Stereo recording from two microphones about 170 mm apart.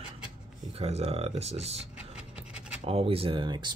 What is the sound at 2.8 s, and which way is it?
Speech, 35° right (ahead or behind).